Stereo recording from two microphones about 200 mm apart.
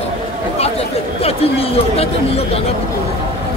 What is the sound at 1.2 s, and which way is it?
Speech, 30° left (ahead or behind).